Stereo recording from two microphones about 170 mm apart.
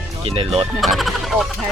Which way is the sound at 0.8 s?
Centre (ahead or behind).